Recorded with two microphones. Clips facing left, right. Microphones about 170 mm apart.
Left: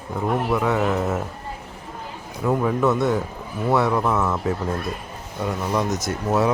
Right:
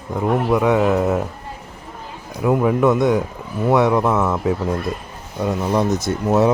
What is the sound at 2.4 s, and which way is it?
Speech, 15° right (ahead or behind).